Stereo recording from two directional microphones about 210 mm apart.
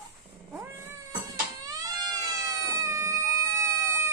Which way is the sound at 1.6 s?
15° right (ahead or behind).